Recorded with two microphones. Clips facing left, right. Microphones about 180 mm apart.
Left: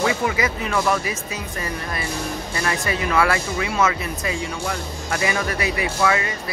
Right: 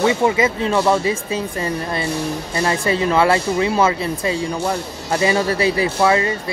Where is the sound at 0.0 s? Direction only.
25° right (ahead or behind).